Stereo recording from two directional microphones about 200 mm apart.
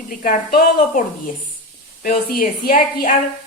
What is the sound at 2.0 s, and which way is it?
A woman's voice, 45° left (ahead or behind).